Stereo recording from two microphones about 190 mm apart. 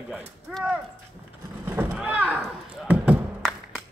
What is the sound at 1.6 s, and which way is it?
Rowboat, 10° right (ahead or behind).